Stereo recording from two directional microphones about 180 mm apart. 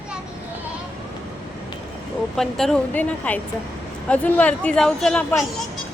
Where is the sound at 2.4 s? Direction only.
Centre (ahead or behind).